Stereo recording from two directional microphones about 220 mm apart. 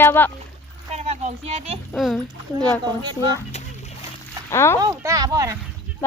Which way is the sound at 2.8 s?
20° right (ahead or behind).